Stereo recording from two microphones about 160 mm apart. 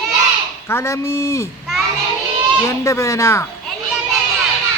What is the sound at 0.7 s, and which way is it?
Speech, 15° left (ahead or behind).